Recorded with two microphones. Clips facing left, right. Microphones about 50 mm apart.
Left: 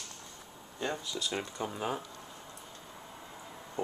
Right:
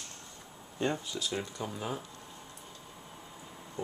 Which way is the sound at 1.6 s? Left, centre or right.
Centre.